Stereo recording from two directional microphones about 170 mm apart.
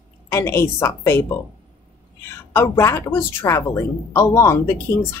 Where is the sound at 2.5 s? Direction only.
15° left (ahead or behind).